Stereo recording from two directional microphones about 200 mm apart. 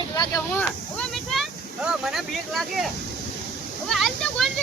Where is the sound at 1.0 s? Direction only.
Centre (ahead or behind).